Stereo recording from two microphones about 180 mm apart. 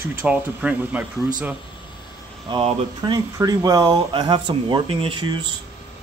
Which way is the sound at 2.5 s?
30° right (ahead or behind).